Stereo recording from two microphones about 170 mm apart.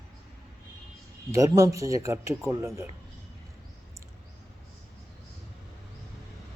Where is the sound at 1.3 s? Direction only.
20° right (ahead or behind).